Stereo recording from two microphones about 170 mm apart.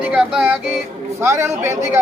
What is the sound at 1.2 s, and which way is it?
Speech, 15° right (ahead or behind).